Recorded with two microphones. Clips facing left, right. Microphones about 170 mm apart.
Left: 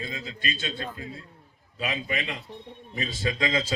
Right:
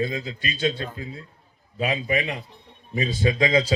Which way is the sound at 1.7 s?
45° right (ahead or behind).